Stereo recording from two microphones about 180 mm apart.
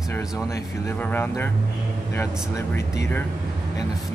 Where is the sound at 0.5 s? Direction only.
15° left (ahead or behind).